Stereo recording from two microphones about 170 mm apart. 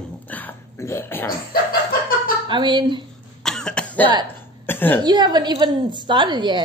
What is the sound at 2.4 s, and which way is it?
Speech, 25° right (ahead or behind).